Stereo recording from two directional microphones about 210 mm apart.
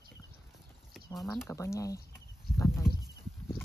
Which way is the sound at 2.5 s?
10° left (ahead or behind).